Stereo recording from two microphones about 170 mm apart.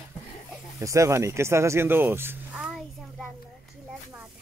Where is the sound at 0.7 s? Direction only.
20° right (ahead or behind).